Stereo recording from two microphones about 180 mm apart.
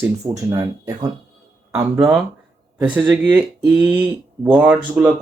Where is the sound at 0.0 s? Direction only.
20° right (ahead or behind).